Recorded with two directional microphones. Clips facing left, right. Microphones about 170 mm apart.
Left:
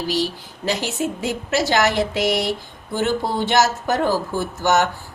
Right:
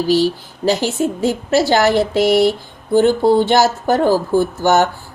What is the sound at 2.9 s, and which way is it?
Speech, 30° right (ahead or behind).